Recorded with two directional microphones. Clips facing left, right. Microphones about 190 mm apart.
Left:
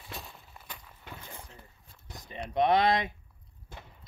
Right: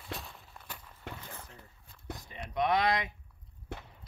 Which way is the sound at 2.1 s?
20° left (ahead or behind).